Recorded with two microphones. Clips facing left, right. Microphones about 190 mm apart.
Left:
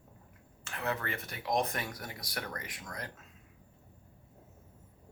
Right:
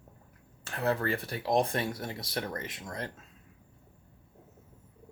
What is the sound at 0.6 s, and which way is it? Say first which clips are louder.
Speech: right 6 dB; 35° right (ahead or behind).